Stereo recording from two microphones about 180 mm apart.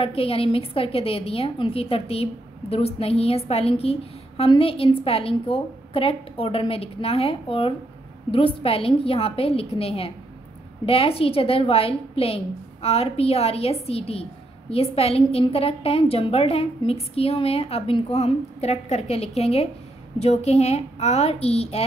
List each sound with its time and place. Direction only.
0.0 s a woman's voice: 30° left (ahead or behind)